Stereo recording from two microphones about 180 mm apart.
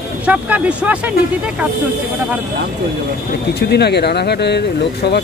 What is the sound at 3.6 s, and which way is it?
Speech, 65° left (ahead or behind).